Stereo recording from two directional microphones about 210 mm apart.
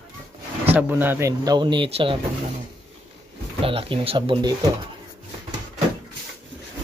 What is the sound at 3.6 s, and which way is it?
Speech, 25° right (ahead or behind).